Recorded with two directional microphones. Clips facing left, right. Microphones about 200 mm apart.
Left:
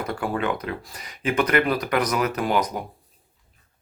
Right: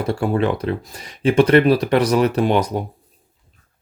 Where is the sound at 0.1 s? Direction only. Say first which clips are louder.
Right 7 dB; 30° right (ahead or behind).